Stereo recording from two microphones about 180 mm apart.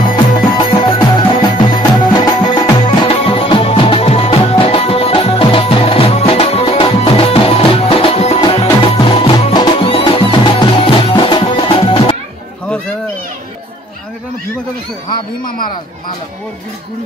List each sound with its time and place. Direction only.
0.1 s music: 25° left (ahead or behind)